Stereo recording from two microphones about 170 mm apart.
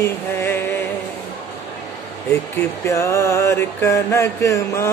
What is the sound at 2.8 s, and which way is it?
Mantra, 15° left (ahead or behind).